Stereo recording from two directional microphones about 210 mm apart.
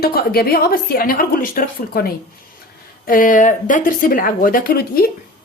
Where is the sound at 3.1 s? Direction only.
40° left (ahead or behind).